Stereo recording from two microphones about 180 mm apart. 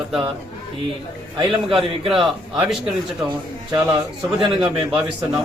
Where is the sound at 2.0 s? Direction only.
Centre (ahead or behind).